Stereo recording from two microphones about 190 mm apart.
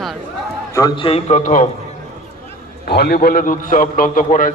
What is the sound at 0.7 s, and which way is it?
Speech, 20° left (ahead or behind).